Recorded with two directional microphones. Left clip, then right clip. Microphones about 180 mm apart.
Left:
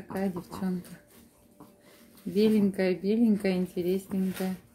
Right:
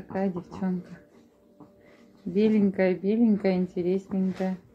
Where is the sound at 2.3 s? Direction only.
15° left (ahead or behind).